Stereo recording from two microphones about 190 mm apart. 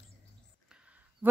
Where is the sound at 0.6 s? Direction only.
5° right (ahead or behind).